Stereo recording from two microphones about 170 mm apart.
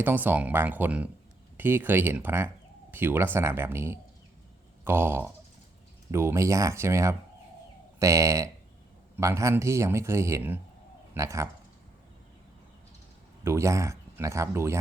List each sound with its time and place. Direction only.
0.0 s speech: 10° right (ahead or behind)
13.4 s speech: 15° right (ahead or behind)